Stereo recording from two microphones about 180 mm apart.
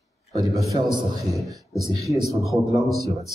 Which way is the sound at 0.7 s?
25° right (ahead or behind).